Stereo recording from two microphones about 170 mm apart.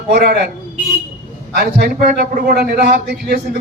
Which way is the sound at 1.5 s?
65° right (ahead or behind).